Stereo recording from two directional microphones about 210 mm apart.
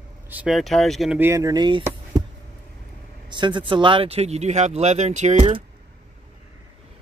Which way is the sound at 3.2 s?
20° right (ahead or behind).